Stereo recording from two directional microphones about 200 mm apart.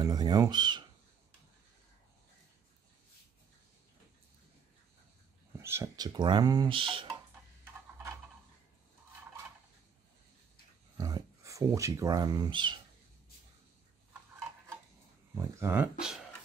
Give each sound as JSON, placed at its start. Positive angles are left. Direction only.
{"t": 0.0, "sound": "speech", "side_deg": -20}
{"t": 5.6, "sound": "speech", "side_deg": -15}
{"t": 11.0, "sound": "speech", "side_deg": -20}
{"t": 15.3, "sound": "speech", "side_deg": -15}